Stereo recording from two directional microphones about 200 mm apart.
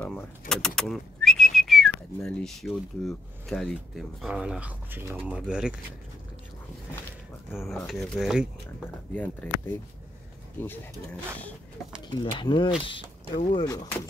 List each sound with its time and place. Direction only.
0.0 s whistling: 5° left (ahead or behind)
4.2 s speech: 5° right (ahead or behind)
7.5 s speech: centre (ahead or behind)
10.6 s speech: 10° left (ahead or behind)
12.3 s speech: 25° left (ahead or behind)